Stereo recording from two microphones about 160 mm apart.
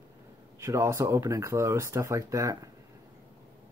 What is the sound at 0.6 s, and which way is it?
Speech, 15° right (ahead or behind).